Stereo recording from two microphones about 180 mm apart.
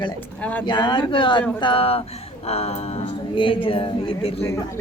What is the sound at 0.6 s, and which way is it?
A woman's voice, 25° left (ahead or behind).